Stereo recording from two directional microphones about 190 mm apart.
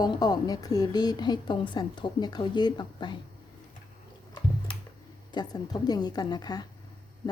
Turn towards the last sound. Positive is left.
turn(degrees=20)  # may be behind; listen again after turning